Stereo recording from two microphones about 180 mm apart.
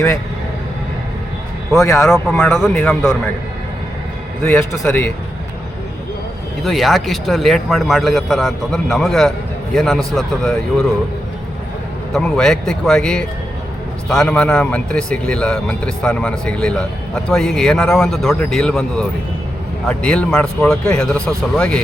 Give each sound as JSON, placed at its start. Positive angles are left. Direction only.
{"t": 1.8, "sound": "a man's voice", "side_deg": 15}
{"t": 2.2, "sound": "a man's voice", "side_deg": 0}
{"t": 4.4, "sound": "a man's voice", "side_deg": 15}
{"t": 6.7, "sound": "a man's voice", "side_deg": 0}
{"t": 12.1, "sound": "a man's voice", "side_deg": 0}